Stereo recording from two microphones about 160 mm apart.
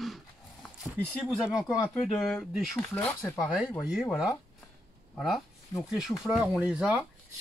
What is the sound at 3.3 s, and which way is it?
Speech, 5° right (ahead or behind).